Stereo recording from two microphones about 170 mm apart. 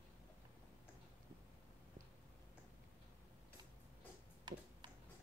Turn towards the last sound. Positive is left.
turn(degrees=-25)  # may be behind; listen again after turning